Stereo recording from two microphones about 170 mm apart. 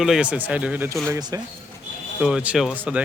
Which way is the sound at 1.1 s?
20° right (ahead or behind).